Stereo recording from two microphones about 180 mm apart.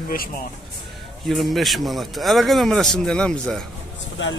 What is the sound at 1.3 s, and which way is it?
Speech, centre (ahead or behind).